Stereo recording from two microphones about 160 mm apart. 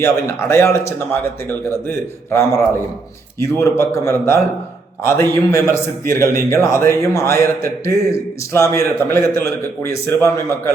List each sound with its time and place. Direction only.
0.0 s a man's voice: 15° left (ahead or behind)